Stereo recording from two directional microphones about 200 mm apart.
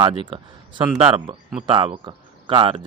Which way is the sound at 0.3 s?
25° right (ahead or behind).